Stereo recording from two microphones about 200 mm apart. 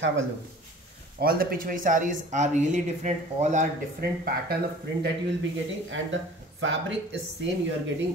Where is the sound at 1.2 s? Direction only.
50° right (ahead or behind).